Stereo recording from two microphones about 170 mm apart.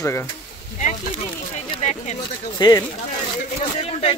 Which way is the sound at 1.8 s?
45° left (ahead or behind).